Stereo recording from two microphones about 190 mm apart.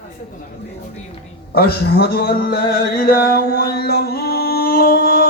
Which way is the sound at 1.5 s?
55° left (ahead or behind).